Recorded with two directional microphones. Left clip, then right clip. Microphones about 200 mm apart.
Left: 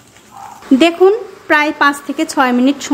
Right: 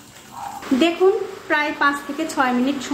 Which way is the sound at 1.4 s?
40° left (ahead or behind).